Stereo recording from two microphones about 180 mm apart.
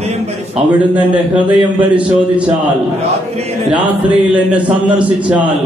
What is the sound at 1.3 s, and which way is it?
A man's voice, 10° right (ahead or behind).